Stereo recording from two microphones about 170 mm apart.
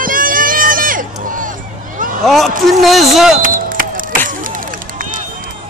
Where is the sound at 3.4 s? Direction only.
55° right (ahead or behind).